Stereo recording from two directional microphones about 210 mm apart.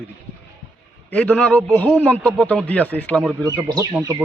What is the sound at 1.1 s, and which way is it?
A man's voice, 5° left (ahead or behind).